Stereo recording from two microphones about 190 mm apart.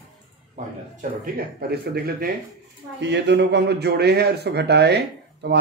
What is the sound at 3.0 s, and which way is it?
A man's voice, 65° right (ahead or behind).